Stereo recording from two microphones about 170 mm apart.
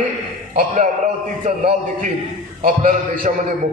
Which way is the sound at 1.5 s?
45° right (ahead or behind).